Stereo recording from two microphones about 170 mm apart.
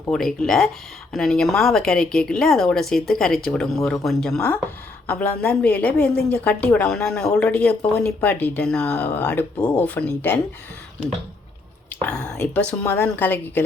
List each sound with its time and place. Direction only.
0.1 s speech: centre (ahead or behind)
12.0 s speech: 5° left (ahead or behind)